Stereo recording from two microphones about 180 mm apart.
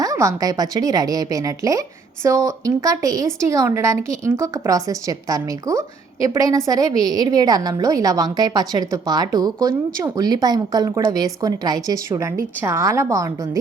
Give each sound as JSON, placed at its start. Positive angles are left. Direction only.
{"t": 0.0, "sound": "a woman's voice", "side_deg": -15}